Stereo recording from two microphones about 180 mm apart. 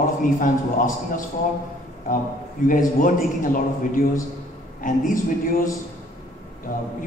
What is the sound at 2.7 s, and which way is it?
A man's voice, 50° left (ahead or behind).